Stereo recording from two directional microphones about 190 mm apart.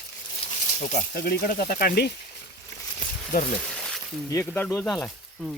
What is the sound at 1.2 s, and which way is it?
Speech, 50° left (ahead or behind).